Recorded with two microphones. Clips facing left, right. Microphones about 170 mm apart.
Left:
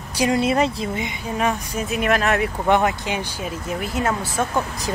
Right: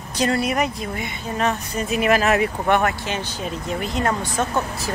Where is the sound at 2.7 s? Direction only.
15° left (ahead or behind).